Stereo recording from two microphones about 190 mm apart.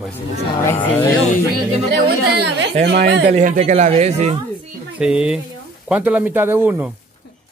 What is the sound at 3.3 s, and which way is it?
Speech, 35° right (ahead or behind).